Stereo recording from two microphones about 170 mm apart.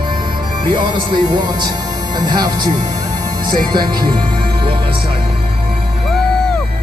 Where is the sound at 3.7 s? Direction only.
25° right (ahead or behind).